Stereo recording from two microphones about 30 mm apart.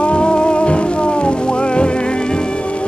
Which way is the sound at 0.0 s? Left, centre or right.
Left.